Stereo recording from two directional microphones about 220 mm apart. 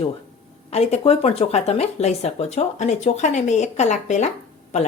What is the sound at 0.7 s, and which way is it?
A woman's voice, 30° left (ahead or behind).